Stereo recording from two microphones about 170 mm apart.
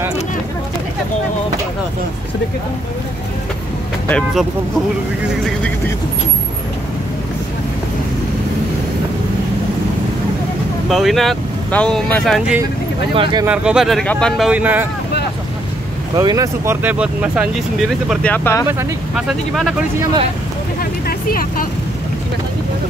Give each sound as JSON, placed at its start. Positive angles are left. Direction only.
{"t": 10.9, "sound": "speech", "side_deg": 0}
{"t": 13.1, "sound": "speech", "side_deg": -30}
{"t": 13.5, "sound": "speech", "side_deg": -5}
{"t": 16.2, "sound": "speech", "side_deg": -20}
{"t": 18.3, "sound": "speech", "side_deg": 15}
{"t": 19.1, "sound": "speech", "side_deg": 0}
{"t": 20.8, "sound": "vehicle", "side_deg": 60}